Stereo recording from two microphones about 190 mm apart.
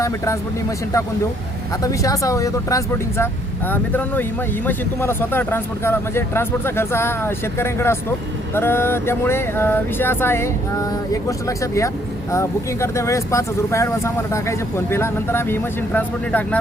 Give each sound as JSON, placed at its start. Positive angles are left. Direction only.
{"t": 1.8, "sound": "speech", "side_deg": 15}